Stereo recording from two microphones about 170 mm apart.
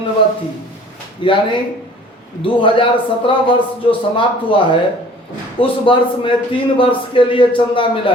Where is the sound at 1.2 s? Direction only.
30° left (ahead or behind).